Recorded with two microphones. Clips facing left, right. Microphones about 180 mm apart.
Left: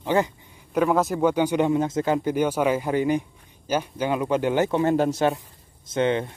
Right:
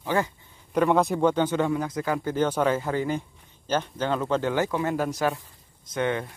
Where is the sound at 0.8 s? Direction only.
Centre (ahead or behind); by 6.3 s 20° left (ahead or behind).